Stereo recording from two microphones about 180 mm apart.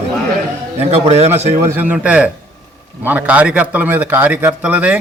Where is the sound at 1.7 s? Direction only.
10° right (ahead or behind).